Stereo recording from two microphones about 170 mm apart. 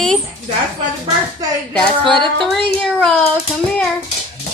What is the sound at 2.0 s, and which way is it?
Speech, 30° right (ahead or behind).